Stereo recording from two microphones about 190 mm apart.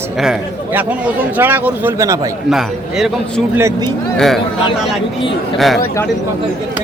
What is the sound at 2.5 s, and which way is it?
A man's voice, centre (ahead or behind).